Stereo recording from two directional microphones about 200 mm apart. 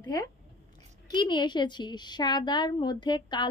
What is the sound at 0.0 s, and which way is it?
Speech, 15° left (ahead or behind).